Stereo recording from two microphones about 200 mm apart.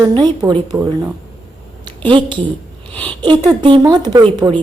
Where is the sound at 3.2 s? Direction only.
25° right (ahead or behind).